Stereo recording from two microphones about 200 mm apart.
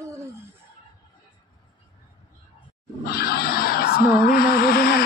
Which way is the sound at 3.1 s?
50° left (ahead or behind).